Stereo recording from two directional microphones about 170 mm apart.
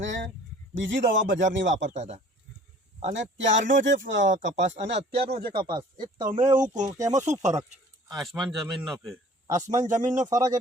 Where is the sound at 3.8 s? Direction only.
90° right.